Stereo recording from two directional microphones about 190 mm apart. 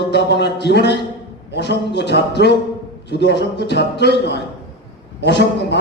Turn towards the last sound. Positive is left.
turn(degrees=65)  # may be behind; listen again after turning